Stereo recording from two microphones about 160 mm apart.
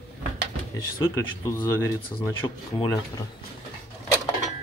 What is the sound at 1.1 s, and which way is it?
Speech, 20° left (ahead or behind).